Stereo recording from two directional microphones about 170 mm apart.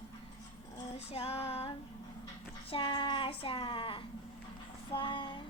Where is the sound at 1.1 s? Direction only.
35° left (ahead or behind).